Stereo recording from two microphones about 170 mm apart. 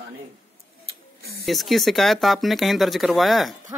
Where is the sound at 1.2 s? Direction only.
70° right (ahead or behind).